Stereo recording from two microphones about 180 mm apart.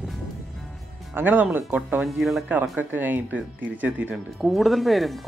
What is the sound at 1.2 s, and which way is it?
Speech, 10° right (ahead or behind).